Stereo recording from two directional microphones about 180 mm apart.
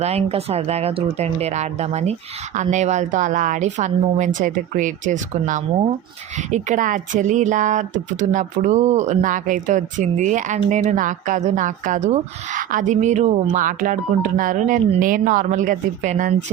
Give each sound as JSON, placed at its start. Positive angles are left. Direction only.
{"t": 0.0, "sound": "speech", "side_deg": -35}